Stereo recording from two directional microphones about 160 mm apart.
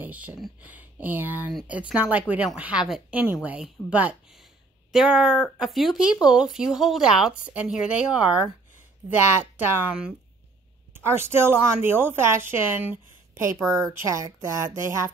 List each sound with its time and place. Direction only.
0.0 s a woman's voice: 10° right (ahead or behind)
9.8 s a woman's voice: 10° right (ahead or behind)